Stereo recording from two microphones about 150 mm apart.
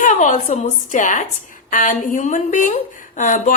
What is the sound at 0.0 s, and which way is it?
A woman's voice, 55° left (ahead or behind).